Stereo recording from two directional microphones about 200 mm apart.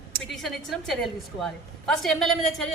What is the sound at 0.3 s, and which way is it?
A man's voice, centre (ahead or behind).